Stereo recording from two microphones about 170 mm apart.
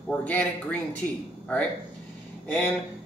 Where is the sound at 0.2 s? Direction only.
10° left (ahead or behind).